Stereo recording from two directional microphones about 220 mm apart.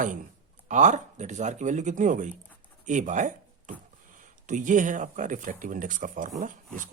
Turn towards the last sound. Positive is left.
turn(degrees=-35)  # may be behind; listen again after turning